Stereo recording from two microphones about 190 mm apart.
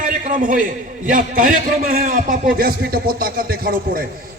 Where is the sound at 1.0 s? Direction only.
45° right (ahead or behind).